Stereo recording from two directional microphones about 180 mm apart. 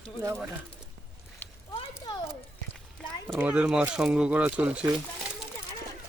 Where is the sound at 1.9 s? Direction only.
20° left (ahead or behind).